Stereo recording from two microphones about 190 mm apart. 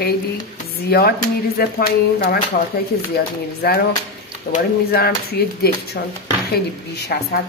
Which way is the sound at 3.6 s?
55° left (ahead or behind).